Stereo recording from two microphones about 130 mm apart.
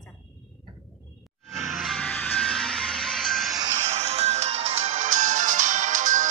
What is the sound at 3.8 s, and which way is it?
Music, 55° right (ahead or behind).